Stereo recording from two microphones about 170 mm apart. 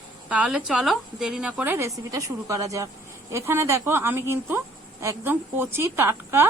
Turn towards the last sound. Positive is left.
turn(degrees=-15)  # may be behind; listen again after turning